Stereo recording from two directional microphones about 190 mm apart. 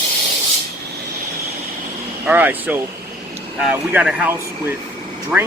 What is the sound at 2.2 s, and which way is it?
Speech, 10° right (ahead or behind).